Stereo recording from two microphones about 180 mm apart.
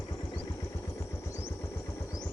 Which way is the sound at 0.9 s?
15° left (ahead or behind).